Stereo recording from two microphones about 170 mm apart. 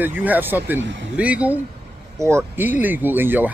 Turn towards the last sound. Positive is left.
turn(degrees=-10)  # may be behind; listen again after turning